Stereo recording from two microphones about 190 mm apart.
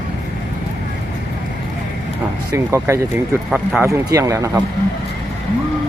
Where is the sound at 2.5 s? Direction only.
15° right (ahead or behind).